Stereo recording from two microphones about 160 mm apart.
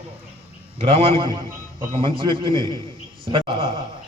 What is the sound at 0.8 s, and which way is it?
A man's voice, 35° right (ahead or behind).